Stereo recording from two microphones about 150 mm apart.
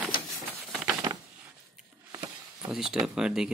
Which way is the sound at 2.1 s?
15° right (ahead or behind).